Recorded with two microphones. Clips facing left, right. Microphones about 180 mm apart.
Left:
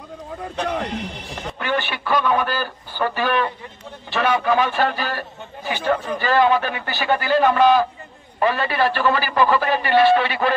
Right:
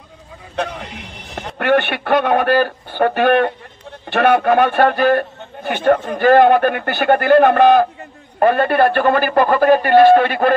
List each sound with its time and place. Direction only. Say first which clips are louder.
1.3 s a man's voice: right 9 dB; 60° right (ahead or behind)